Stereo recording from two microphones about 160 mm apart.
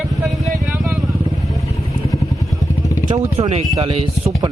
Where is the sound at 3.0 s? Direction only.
40° right (ahead or behind).